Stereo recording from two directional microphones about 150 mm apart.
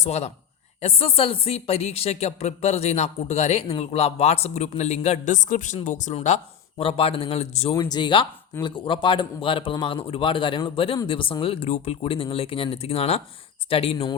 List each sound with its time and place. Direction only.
0.0 s a man's voice: 45° left (ahead or behind)
7.8 s a man's voice: 30° left (ahead or behind)